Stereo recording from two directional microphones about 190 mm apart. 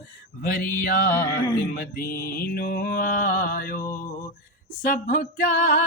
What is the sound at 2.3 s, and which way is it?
Music, 50° left (ahead or behind).